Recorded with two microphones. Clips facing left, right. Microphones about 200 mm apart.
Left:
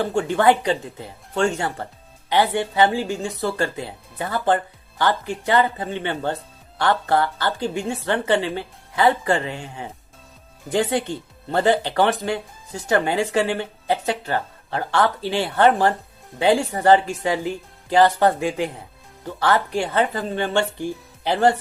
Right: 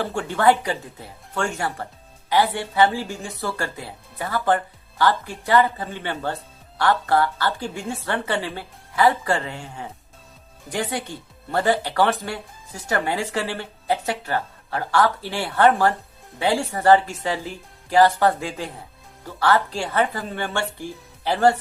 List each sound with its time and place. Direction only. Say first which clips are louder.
0.1 s speech: even; 15° left (ahead or behind)